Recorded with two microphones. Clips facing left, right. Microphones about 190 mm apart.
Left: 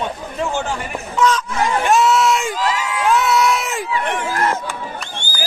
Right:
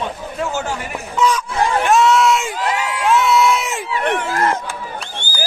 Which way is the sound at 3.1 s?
Centre (ahead or behind).